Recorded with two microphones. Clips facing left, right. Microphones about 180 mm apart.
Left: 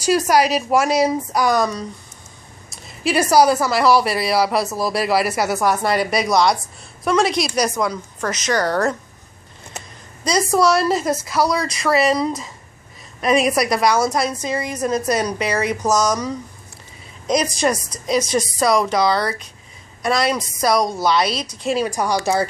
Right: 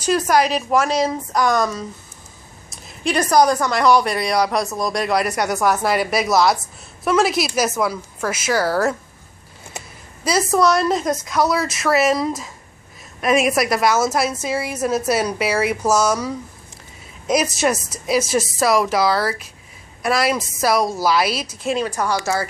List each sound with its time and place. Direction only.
0.0 s a woman's voice: 10° left (ahead or behind)
21.7 s speech: 15° left (ahead or behind)